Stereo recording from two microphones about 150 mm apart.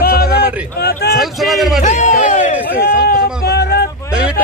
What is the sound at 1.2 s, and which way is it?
Speech, centre (ahead or behind).